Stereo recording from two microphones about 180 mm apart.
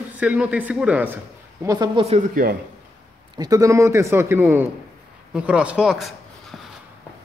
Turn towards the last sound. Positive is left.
turn(degrees=0)  # may be behind; listen again after turning